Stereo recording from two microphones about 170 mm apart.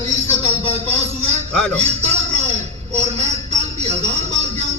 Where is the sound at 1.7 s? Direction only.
40° right (ahead or behind).